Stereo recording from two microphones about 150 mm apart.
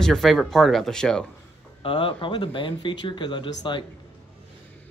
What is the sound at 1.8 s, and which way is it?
Speech, 35° left (ahead or behind).